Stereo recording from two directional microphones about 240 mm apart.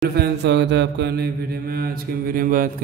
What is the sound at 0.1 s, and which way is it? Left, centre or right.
Mantra, right.